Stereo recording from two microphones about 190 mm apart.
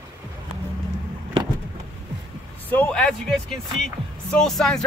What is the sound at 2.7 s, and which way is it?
Speech, 5° left (ahead or behind).